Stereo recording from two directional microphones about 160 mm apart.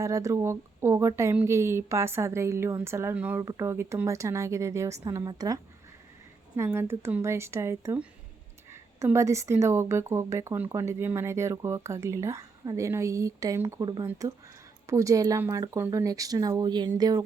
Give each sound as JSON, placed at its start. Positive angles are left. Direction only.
{"t": 0.0, "sound": "a woman's voice", "side_deg": -20}
{"t": 6.6, "sound": "a woman's voice", "side_deg": -15}